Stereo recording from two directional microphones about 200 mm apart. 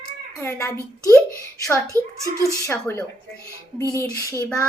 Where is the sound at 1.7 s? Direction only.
15° right (ahead or behind).